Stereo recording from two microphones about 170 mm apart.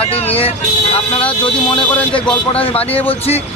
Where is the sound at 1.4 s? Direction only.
30° left (ahead or behind).